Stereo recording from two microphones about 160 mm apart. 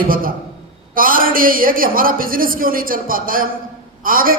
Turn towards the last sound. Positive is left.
turn(degrees=-60)  # may be behind; listen again after turning